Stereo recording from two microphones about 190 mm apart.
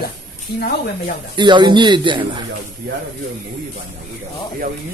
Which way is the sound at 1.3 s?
25° right (ahead or behind).